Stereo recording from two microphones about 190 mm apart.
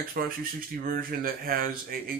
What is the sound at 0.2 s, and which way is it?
Speech, 55° right (ahead or behind).